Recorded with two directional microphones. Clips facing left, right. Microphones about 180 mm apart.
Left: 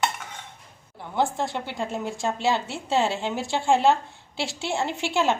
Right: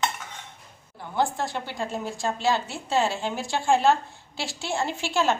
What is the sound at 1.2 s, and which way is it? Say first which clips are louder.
A woman's voice: left 1 dB; 20° left (ahead or behind).